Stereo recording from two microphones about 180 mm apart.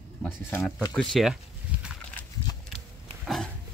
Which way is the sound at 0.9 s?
Centre (ahead or behind).